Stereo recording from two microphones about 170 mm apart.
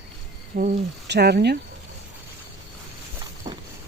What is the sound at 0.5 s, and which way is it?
Speech, 65° right (ahead or behind).